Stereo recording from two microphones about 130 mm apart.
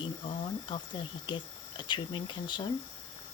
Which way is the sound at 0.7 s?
40° left (ahead or behind).